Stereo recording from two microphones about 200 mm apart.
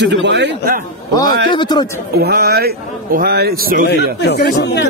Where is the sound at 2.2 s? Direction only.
50° right (ahead or behind).